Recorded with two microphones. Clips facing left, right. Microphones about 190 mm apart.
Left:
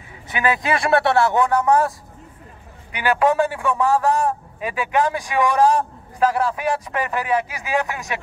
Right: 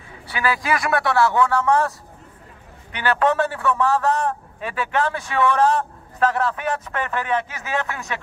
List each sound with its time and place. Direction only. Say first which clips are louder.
0.3 s a man's voice: left 2 dB; 20° left (ahead or behind)